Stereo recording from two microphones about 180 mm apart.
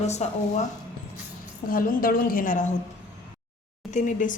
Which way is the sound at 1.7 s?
50° left (ahead or behind).